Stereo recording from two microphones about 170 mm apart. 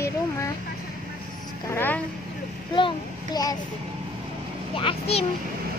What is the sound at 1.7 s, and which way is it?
Vehicle, 10° left (ahead or behind).